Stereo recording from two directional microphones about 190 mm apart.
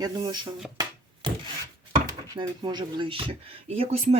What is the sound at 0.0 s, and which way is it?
Speech, 20° right (ahead or behind).